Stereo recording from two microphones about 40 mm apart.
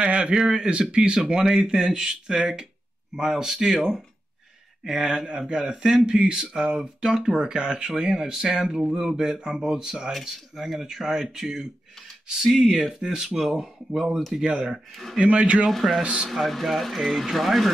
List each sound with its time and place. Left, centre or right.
0.0 s a sound: right
0.4 s speech: centre
14.4 s speech: right
15.1 s speech: right
15.7 s speech: centre
16.0 s speech: right
16.3 s speech: centre